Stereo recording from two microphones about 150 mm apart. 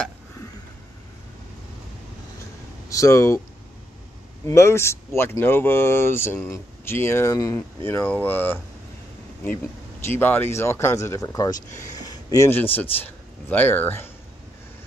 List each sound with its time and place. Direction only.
2.9 s speech: 20° left (ahead or behind)
4.5 s speech: 20° left (ahead or behind)
10.0 s speech: 15° left (ahead or behind)
12.0 s a sound: 25° left (ahead or behind)
13.0 s speech: 10° left (ahead or behind)